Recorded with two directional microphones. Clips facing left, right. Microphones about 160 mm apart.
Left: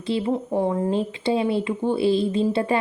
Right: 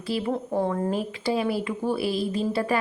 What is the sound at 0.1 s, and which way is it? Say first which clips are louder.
A woman's voice: left 3 dB; 20° left (ahead or behind).